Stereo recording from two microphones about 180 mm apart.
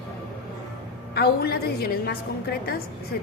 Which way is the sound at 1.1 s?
60° left (ahead or behind).